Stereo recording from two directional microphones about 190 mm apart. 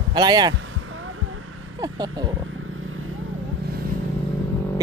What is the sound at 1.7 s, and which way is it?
Speech, 20° right (ahead or behind).